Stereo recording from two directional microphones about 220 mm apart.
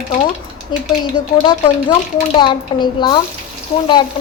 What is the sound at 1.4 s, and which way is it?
A woman's voice, 20° left (ahead or behind).